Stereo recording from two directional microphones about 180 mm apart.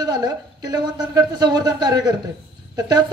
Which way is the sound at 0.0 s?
20° right (ahead or behind).